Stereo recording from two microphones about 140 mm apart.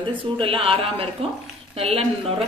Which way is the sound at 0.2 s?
40° right (ahead or behind).